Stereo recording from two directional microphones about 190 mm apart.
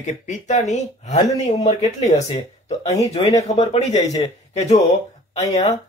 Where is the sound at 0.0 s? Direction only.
40° left (ahead or behind).